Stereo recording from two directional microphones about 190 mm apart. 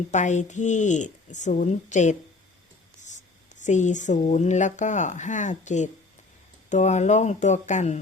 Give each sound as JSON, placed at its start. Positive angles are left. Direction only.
{"t": 0.1, "sound": "speech", "side_deg": 40}